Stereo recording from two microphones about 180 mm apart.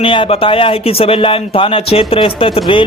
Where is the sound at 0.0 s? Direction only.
30° left (ahead or behind).